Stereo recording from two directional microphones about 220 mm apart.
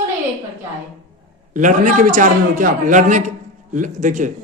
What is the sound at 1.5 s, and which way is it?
A man's voice, 35° right (ahead or behind).